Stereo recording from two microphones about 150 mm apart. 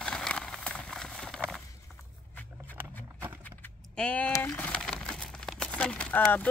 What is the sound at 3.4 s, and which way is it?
Vehicle, 10° left (ahead or behind).